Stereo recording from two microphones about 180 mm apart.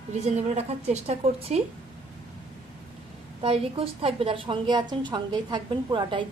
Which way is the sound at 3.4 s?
30° right (ahead or behind).